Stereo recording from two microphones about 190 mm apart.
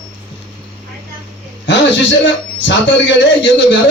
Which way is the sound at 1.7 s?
70° left (ahead or behind).